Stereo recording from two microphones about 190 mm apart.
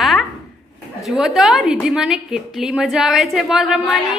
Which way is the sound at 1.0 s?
Centre (ahead or behind).